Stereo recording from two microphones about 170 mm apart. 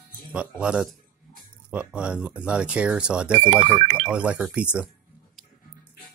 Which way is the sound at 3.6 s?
30° right (ahead or behind).